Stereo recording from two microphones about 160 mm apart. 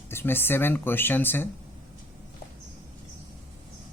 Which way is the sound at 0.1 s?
15° left (ahead or behind).